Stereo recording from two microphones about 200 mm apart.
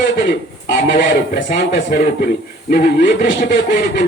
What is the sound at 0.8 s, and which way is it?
Speech, 60° left (ahead or behind).